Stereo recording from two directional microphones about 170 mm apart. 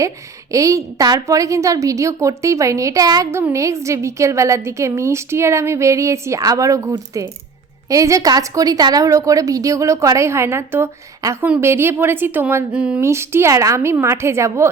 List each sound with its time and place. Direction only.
0.5 s a woman's voice: 20° right (ahead or behind)